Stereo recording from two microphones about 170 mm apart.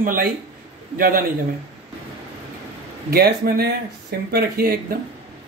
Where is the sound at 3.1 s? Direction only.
65° right (ahead or behind).